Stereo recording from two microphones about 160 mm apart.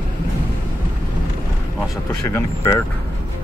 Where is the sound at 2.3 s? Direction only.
15° left (ahead or behind).